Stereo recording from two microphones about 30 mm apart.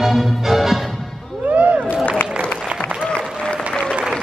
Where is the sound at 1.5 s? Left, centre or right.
Right.